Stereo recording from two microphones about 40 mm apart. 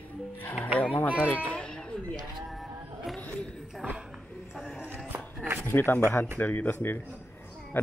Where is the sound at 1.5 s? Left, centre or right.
Left.